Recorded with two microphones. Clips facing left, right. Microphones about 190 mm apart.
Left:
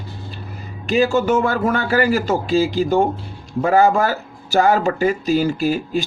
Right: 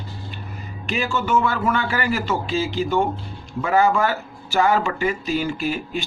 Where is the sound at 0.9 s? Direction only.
40° left (ahead or behind).